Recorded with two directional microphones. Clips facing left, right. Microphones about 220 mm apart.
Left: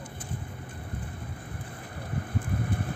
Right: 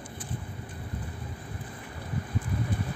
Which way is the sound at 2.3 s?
50° left (ahead or behind).